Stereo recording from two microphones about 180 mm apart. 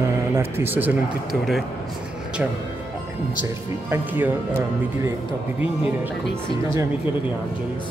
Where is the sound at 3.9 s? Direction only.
10° right (ahead or behind).